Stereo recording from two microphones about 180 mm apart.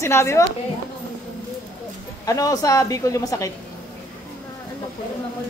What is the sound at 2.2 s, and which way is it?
Speech, 20° left (ahead or behind).